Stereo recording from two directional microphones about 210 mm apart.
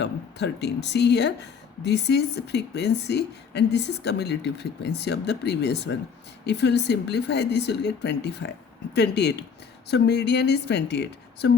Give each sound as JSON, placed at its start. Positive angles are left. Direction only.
{"t": 0.0, "sound": "speech", "side_deg": 55}